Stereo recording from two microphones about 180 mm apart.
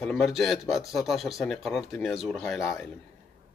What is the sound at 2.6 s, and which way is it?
Speech, 15° left (ahead or behind).